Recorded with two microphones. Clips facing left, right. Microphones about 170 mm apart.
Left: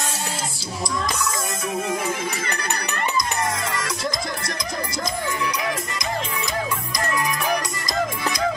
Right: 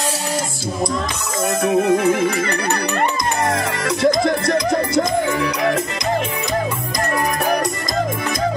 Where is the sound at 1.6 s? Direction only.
55° right (ahead or behind).